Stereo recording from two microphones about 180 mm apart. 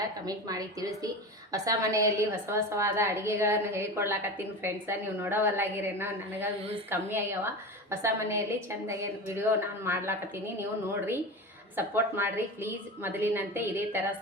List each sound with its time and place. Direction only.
0.3 s a woman's voice: 20° right (ahead or behind)
11.8 s a woman's voice: 10° right (ahead or behind)